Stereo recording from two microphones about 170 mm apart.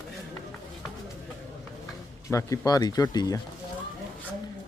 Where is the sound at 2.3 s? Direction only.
20° left (ahead or behind).